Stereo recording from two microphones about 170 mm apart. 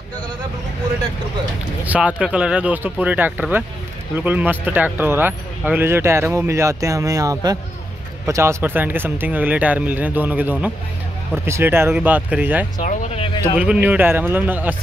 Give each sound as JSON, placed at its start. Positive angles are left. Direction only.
{"t": 1.9, "sound": "speech", "side_deg": -5}
{"t": 12.8, "sound": "speech", "side_deg": 40}
{"t": 13.4, "sound": "speech", "side_deg": -10}